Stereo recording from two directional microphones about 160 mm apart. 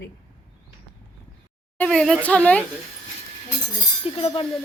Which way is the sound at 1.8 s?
5° left (ahead or behind).